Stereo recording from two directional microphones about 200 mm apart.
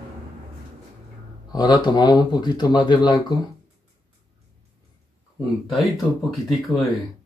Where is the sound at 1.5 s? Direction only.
20° left (ahead or behind).